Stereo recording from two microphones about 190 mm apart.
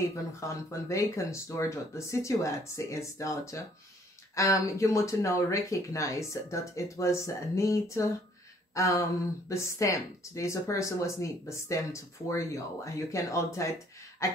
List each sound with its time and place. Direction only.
0.1 s speech: 15° left (ahead or behind)
8.7 s a sound: 15° left (ahead or behind)
9.5 s speech: 15° left (ahead or behind)